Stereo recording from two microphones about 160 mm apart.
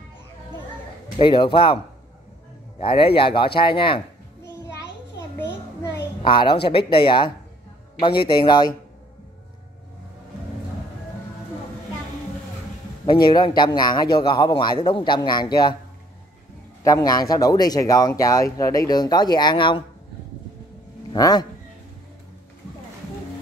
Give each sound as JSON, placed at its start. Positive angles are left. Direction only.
{"t": 1.1, "sound": "a man's voice", "side_deg": 30}
{"t": 2.8, "sound": "a man's voice", "side_deg": 35}
{"t": 6.2, "sound": "a man's voice", "side_deg": 30}
{"t": 13.3, "sound": "speech", "side_deg": 25}
{"t": 16.8, "sound": "speech", "side_deg": 20}
{"t": 21.1, "sound": "speech", "side_deg": 25}